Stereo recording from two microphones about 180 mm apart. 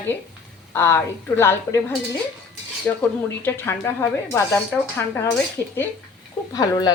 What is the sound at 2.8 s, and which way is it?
Speech, 10° left (ahead or behind).